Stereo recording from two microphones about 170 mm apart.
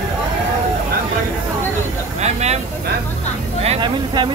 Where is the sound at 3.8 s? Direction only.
25° right (ahead or behind).